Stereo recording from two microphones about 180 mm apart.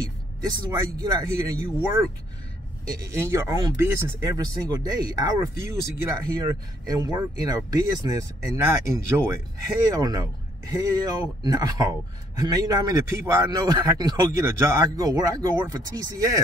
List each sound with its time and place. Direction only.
0.4 s speech: 20° right (ahead or behind)